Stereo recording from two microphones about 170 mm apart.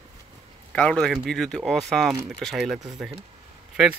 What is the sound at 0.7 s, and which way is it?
Speech, 5° left (ahead or behind).